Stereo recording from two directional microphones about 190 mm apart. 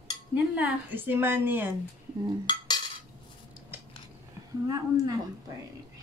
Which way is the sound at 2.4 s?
25° left (ahead or behind).